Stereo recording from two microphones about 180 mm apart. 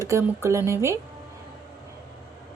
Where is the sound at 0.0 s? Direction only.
15° right (ahead or behind).